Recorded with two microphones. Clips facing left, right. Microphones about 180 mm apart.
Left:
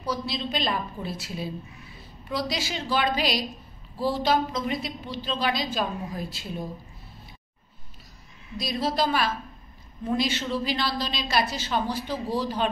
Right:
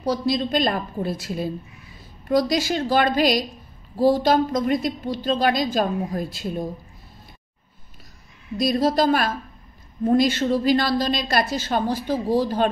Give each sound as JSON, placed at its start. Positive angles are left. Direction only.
{"t": 0.0, "sound": "speech", "side_deg": -35}
{"t": 0.4, "sound": "a woman's voice", "side_deg": -50}
{"t": 8.5, "sound": "a woman's voice", "side_deg": -45}